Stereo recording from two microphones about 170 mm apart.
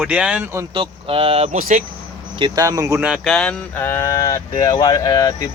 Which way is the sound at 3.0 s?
5° right (ahead or behind).